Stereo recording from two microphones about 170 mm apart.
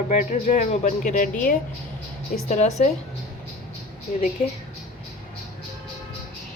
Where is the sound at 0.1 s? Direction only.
45° left (ahead or behind).